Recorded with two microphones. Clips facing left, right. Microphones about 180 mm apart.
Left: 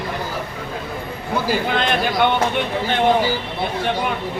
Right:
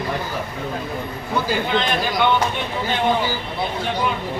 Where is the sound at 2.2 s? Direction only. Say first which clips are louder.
Even; 55° left (ahead or behind).